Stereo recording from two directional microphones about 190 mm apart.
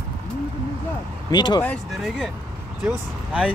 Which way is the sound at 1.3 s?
20° left (ahead or behind).